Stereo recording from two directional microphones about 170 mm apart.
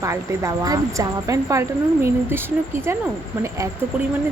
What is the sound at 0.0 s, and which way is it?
Speech, 15° right (ahead or behind).